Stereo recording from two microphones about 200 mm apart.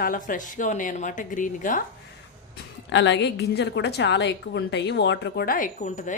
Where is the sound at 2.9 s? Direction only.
60° left (ahead or behind).